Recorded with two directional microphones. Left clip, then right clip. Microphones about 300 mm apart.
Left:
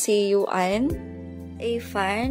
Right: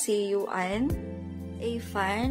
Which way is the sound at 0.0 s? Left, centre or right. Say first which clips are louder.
Left 6 dB; centre.